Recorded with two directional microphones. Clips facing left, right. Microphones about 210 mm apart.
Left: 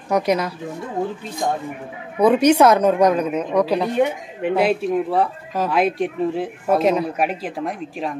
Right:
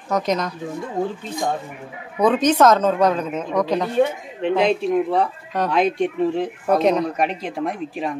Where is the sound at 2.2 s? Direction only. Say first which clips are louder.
Left 2 dB; 10° left (ahead or behind).